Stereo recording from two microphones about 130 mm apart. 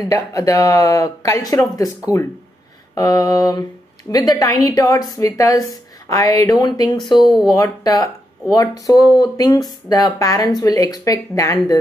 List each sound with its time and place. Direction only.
0.0 s a woman's voice: 25° left (ahead or behind)
2.9 s a woman's voice: 30° left (ahead or behind)